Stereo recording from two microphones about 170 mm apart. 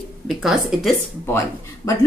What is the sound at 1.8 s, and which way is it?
Speech, 20° left (ahead or behind).